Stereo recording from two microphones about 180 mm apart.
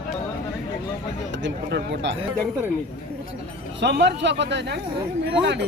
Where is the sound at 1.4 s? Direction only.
70° right (ahead or behind).